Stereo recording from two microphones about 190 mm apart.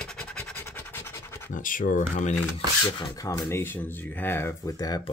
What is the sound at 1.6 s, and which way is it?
Speech, 45° left (ahead or behind).